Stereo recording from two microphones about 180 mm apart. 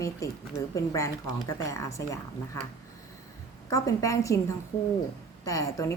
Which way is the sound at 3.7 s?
20° left (ahead or behind).